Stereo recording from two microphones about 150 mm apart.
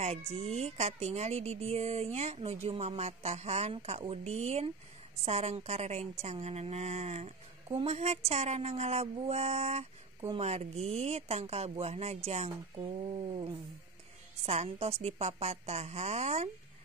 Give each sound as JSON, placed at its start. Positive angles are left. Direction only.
{"t": 0.0, "sound": "speech", "side_deg": -45}